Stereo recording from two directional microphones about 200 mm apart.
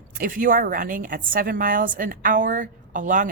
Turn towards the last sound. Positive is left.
turn(degrees=-40)  # may be behind; listen again after turning